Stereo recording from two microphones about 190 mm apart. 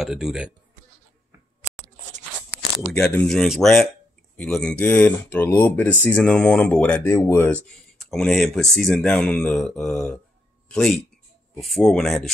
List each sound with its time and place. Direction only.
0.0 s speech: centre (ahead or behind)
2.1 s a sound: 55° right (ahead or behind)
2.9 s speech: 10° left (ahead or behind)